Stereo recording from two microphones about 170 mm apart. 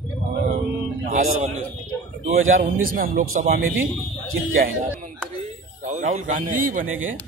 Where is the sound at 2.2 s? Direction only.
40° right (ahead or behind).